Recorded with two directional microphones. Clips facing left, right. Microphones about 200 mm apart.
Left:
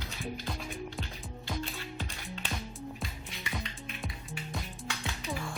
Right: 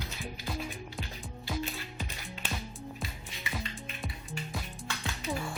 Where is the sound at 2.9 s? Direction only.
Centre (ahead or behind).